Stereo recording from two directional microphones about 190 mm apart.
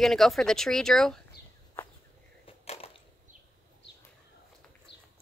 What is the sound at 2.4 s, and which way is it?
Crushing, 30° left (ahead or behind).